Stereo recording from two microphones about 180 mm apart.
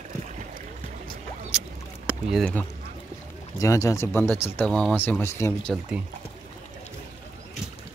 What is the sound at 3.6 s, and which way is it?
Speech, 15° left (ahead or behind).